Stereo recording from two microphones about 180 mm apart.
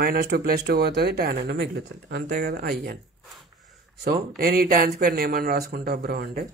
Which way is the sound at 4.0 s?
60° right (ahead or behind).